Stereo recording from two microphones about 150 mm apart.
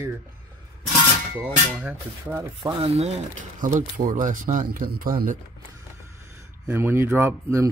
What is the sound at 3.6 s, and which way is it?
Speech, 60° right (ahead or behind).